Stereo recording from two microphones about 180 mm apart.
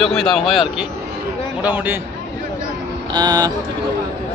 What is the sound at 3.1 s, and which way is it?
Speech, 20° right (ahead or behind).